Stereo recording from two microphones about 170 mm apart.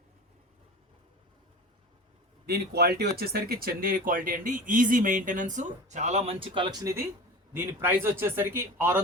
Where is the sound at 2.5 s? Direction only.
70° right (ahead or behind).